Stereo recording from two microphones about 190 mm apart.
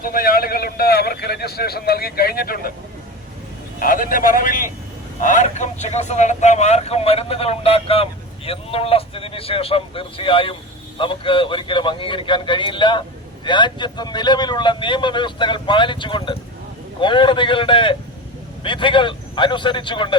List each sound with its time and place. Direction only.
0.0 s a man's voice: 50° left (ahead or behind)
3.8 s a man's voice: 45° left (ahead or behind); by 20.1 s 25° left (ahead or behind)